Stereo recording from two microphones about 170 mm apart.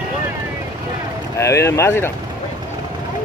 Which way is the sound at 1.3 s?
15° left (ahead or behind).